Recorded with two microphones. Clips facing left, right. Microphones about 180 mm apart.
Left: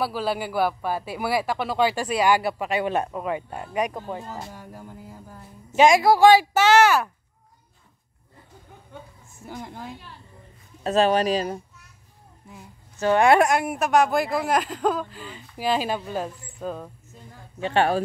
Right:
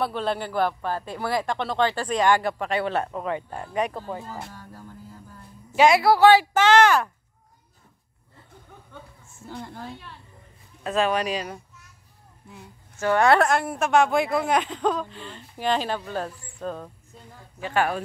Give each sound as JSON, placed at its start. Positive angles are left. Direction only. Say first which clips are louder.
{"t": 0.0, "sound": "a man's voice", "louder": "even", "side_deg": 5}
{"t": 9.4, "sound": "a man's voice", "louder": "even", "side_deg": 15}
{"t": 10.8, "sound": "speech", "louder": "left 4 dB", "side_deg": 35}
{"t": 13.0, "sound": "speech", "louder": "left 2 dB", "side_deg": 15}
{"t": 17.6, "sound": "speech", "louder": "left 3 dB", "side_deg": 25}